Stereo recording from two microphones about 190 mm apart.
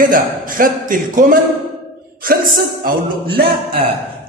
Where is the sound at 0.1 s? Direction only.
45° right (ahead or behind).